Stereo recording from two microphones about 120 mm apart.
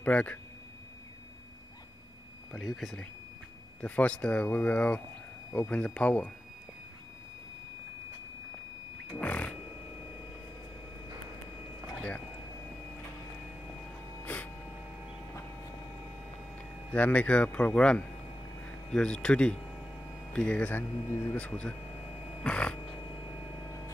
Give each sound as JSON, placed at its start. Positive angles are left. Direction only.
{"t": 0.0, "sound": "speech", "side_deg": 10}
{"t": 2.5, "sound": "speech", "side_deg": 0}
{"t": 5.5, "sound": "speech", "side_deg": 20}
{"t": 9.2, "sound": "music", "side_deg": 10}
{"t": 14.2, "sound": "a sound", "side_deg": 15}
{"t": 16.9, "sound": "speech", "side_deg": 10}
{"t": 21.1, "sound": "speech", "side_deg": 20}
{"t": 21.4, "sound": "speech", "side_deg": 10}
{"t": 22.4, "sound": "a sound", "side_deg": 10}